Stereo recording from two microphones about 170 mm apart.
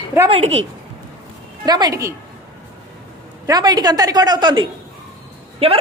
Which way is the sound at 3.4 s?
20° right (ahead or behind).